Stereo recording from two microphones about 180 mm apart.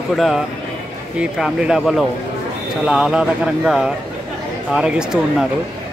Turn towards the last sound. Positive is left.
turn(degrees=-5)  # may be behind; listen again after turning